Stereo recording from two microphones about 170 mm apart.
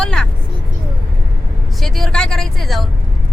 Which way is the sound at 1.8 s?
Centre (ahead or behind).